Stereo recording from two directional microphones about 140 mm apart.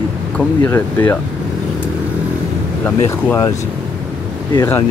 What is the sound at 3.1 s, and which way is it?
Speech, 20° left (ahead or behind).